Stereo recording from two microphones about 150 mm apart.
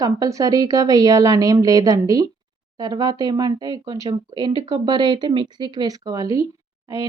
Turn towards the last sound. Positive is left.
turn(degrees=-20)  # may be behind; listen again after turning